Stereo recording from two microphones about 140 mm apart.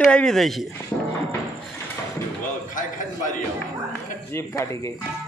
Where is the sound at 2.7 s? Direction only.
70° left (ahead or behind).